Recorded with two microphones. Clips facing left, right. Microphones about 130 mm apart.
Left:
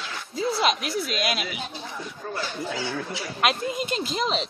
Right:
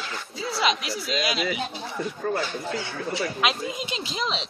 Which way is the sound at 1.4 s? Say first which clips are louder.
Right 5 dB; centre (ahead or behind).